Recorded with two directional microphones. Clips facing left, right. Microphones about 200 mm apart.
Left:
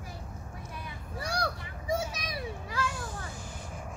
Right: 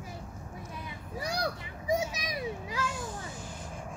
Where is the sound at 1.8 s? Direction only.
15° right (ahead or behind).